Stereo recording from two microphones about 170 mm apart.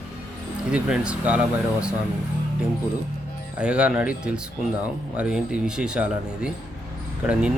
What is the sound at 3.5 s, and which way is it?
Speech, 5° right (ahead or behind).